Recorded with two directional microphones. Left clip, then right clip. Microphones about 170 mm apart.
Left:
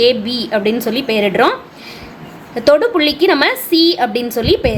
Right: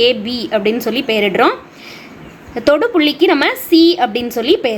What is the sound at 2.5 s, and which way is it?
A woman's voice, 15° right (ahead or behind).